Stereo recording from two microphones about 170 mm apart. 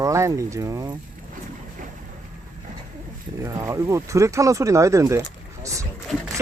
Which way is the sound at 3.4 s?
15° right (ahead or behind).